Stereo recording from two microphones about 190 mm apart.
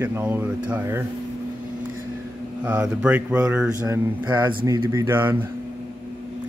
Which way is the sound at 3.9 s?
20° right (ahead or behind).